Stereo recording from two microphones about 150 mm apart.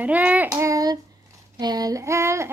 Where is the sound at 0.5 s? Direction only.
25° right (ahead or behind).